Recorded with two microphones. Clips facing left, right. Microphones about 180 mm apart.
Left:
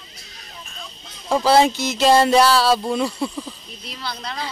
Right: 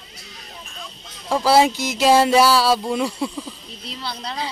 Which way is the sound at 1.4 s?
5° right (ahead or behind).